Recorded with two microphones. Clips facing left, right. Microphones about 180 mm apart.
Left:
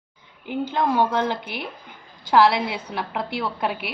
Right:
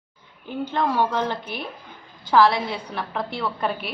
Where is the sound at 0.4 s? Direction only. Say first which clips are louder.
Left 1 dB; 15° left (ahead or behind).